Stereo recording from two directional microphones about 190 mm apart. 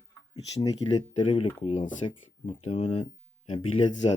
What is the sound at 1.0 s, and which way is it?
Speech, 30° left (ahead or behind).